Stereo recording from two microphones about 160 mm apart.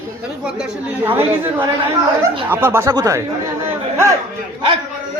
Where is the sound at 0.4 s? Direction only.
5° right (ahead or behind).